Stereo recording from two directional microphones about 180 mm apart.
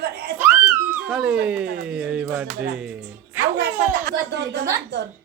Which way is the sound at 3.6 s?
65° right (ahead or behind).